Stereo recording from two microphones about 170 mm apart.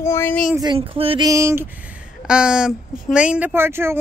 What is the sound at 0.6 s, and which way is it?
Speech, 30° right (ahead or behind).